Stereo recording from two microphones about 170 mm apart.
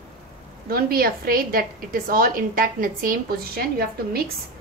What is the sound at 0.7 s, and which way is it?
A woman's voice, 60° right (ahead or behind).